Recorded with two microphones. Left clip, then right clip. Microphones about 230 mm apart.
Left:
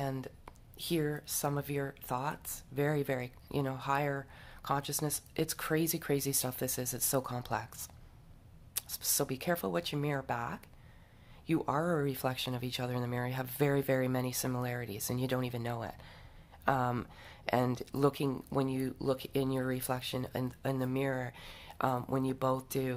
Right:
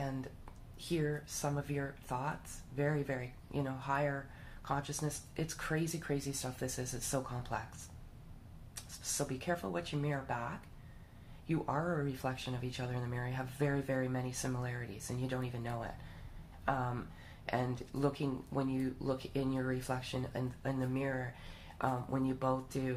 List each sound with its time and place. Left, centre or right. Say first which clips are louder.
0.7 s speech: left 3 dB; left
8.7 s speech: left 5 dB; left